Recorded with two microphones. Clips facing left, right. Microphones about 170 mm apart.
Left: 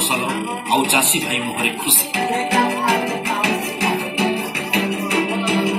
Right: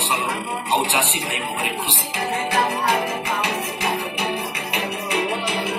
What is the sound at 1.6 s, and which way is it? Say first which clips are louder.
Speech: left 3 dB; 90° left.